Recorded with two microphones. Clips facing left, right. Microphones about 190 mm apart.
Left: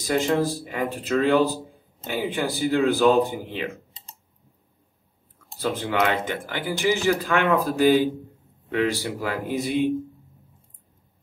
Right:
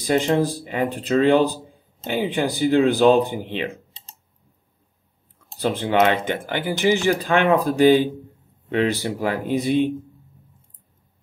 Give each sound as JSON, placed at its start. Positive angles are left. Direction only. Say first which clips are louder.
{"t": 0.1, "sound": "speech", "louder": "right 3 dB", "side_deg": -20}
{"t": 5.6, "sound": "speech", "louder": "right 5 dB", "side_deg": -20}